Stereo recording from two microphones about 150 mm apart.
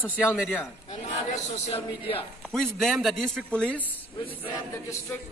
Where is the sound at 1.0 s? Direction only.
50° left (ahead or behind).